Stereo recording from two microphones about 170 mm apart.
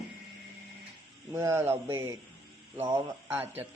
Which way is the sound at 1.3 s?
15° right (ahead or behind).